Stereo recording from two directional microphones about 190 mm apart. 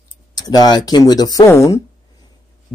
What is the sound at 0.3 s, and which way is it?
Speech, 20° left (ahead or behind).